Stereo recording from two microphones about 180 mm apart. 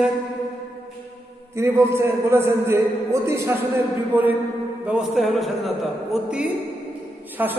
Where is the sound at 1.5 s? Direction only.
15° right (ahead or behind).